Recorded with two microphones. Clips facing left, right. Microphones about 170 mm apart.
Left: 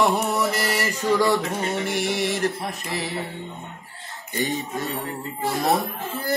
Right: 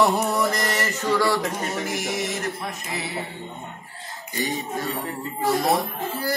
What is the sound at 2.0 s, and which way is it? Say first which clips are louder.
Mantra: left 4 dB; 30° left (ahead or behind).